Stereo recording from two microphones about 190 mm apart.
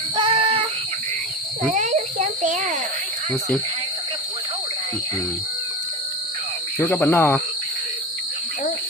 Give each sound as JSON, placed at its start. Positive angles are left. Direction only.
{"t": 0.2, "sound": "child singing", "side_deg": -30}
{"t": 1.7, "sound": "a sound", "side_deg": -40}
{"t": 6.7, "sound": "speech", "side_deg": 10}